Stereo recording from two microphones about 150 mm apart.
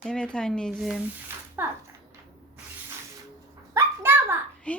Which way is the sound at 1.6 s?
15° right (ahead or behind).